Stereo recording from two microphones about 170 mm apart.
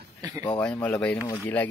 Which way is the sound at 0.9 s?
10° left (ahead or behind).